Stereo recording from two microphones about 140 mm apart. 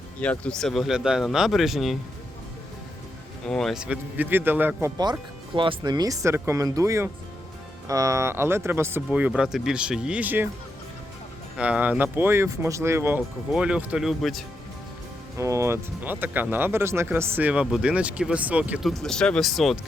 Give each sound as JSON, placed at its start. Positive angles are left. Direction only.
{"t": 0.2, "sound": "speech", "side_deg": 10}
{"t": 3.4, "sound": "speech", "side_deg": 5}
{"t": 5.5, "sound": "speech", "side_deg": -35}
{"t": 11.5, "sound": "speech", "side_deg": -10}
{"t": 15.4, "sound": "speech", "side_deg": -20}
{"t": 18.9, "sound": "speech", "side_deg": 0}